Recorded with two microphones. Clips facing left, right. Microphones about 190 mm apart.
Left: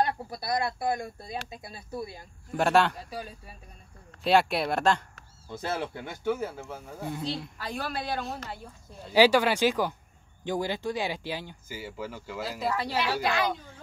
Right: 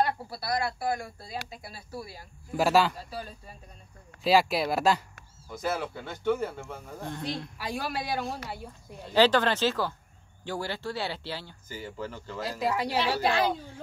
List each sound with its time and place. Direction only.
0.0 s speech: 20° left (ahead or behind)
2.5 s speech: 5° right (ahead or behind)
3.1 s speech: 10° left (ahead or behind)
4.2 s speech: centre (ahead or behind)
5.5 s speech: 25° left (ahead or behind)
6.2 s speech: 5° left (ahead or behind)
7.5 s a man's voice: 10° right (ahead or behind)
9.1 s speech: 10° left (ahead or behind)
12.5 s a man's voice: 15° right (ahead or behind)
13.2 s a woman's voice: 30° right (ahead or behind)